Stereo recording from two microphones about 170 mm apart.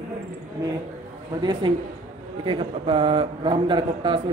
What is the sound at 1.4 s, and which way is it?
A man's voice, 25° right (ahead or behind).